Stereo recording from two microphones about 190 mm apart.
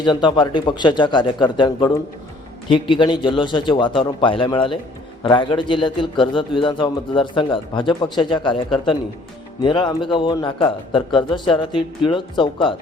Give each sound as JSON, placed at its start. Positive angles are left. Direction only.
{"t": 0.0, "sound": "a man's voice", "side_deg": 25}